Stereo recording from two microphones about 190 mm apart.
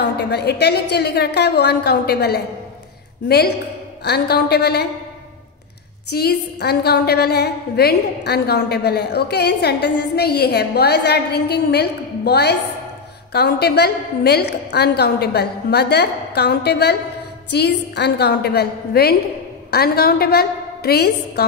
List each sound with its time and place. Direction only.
0.0 s a woman's voice: 60° left (ahead or behind)
6.1 s a woman's voice: 55° left (ahead or behind)